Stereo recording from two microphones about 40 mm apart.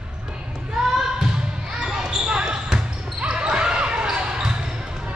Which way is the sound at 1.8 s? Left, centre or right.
Centre.